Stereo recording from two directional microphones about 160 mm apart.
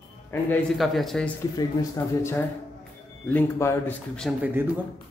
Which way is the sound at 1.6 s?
15° left (ahead or behind).